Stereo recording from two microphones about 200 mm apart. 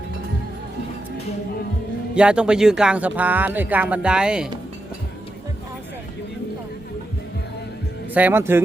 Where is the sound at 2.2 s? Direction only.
5° right (ahead or behind).